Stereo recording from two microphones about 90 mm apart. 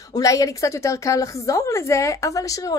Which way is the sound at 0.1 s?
40° left (ahead or behind).